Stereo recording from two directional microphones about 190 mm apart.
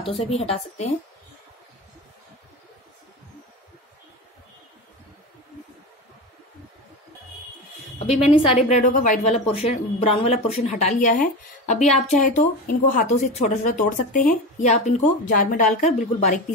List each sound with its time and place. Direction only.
0.2 s speech: 35° left (ahead or behind)
8.3 s speech: 35° left (ahead or behind)